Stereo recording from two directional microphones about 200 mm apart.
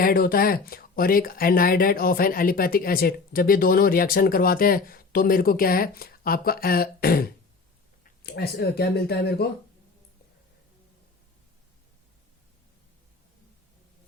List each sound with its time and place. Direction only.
0.0 s speech: 45° left (ahead or behind)